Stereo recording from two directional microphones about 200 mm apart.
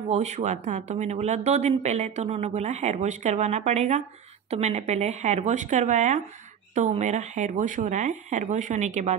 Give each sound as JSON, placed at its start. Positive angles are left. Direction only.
{"t": 0.1, "sound": "speech", "side_deg": -35}